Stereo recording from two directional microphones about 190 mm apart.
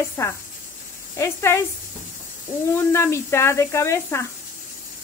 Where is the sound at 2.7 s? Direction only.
15° left (ahead or behind).